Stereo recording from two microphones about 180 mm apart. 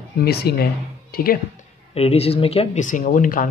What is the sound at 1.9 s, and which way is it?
Speech, 35° left (ahead or behind).